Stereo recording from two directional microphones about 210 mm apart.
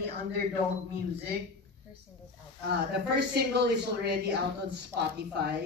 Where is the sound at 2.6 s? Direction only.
50° right (ahead or behind).